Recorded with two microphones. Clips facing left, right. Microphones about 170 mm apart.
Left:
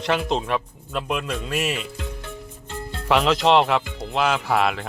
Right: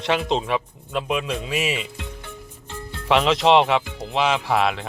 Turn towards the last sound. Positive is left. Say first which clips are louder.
# even
turn(degrees=0)  # may be behind; listen again after turning